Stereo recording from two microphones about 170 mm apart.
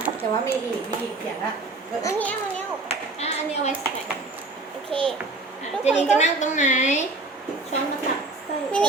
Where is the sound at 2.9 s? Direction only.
40° left (ahead or behind).